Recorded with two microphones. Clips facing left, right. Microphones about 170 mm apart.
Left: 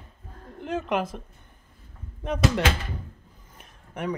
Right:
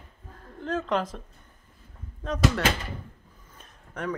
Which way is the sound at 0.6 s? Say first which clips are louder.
Even; 10° left (ahead or behind).